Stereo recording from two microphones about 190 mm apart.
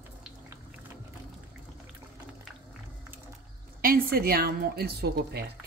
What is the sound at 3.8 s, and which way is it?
Speech, 50° right (ahead or behind).